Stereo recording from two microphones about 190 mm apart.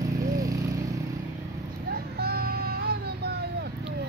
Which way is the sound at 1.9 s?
55° right (ahead or behind).